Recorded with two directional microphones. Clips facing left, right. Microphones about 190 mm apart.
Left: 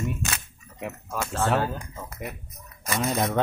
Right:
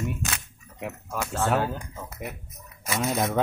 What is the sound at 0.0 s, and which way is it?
Camera, centre (ahead or behind).